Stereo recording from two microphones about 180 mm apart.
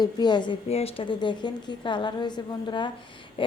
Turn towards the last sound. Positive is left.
turn(degrees=30)  # may be behind; listen again after turning